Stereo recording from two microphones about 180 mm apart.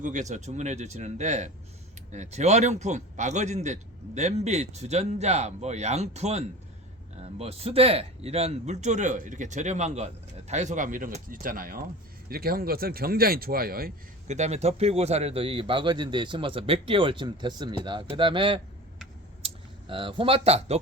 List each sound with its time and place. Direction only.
0.0 s a man's voice: 45° right (ahead or behind)
14.3 s a man's voice: 40° right (ahead or behind)
19.4 s a sound: 30° right (ahead or behind)
19.9 s a man's voice: 30° right (ahead or behind)